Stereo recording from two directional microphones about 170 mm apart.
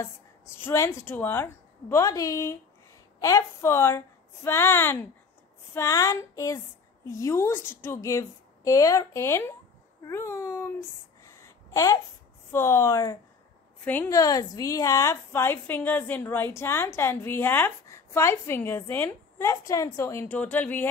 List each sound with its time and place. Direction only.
0.6 s a woman's voice: 15° left (ahead or behind)
11.2 s a sound: 20° left (ahead or behind)
12.5 s a woman's voice: 15° left (ahead or behind)